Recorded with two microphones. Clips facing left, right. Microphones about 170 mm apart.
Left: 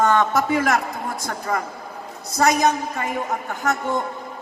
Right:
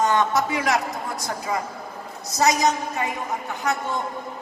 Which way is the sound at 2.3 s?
55° left (ahead or behind).